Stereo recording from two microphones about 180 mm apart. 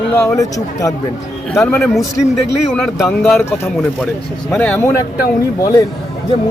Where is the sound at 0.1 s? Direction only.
15° left (ahead or behind).